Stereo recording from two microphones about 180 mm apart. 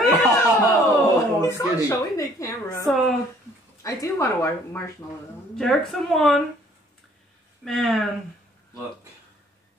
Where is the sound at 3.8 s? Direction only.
15° left (ahead or behind).